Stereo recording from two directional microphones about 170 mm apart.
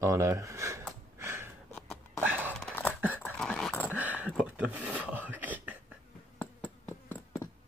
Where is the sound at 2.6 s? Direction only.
15° left (ahead or behind).